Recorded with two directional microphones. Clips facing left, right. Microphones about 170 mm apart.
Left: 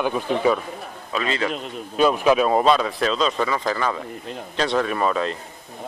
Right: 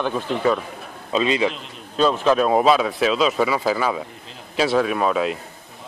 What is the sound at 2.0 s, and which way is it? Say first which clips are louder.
Speech: even; 10° left (ahead or behind).